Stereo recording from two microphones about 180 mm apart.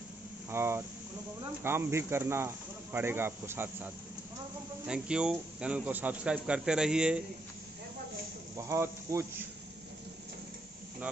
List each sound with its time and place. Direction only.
0.5 s a man's voice: 15° right (ahead or behind)
8.5 s speech: 15° right (ahead or behind)